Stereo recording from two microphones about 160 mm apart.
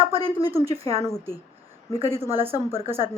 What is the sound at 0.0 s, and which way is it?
Speech, 35° right (ahead or behind).